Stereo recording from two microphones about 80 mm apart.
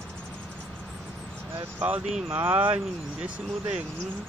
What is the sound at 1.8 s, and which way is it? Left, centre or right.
Speech, right.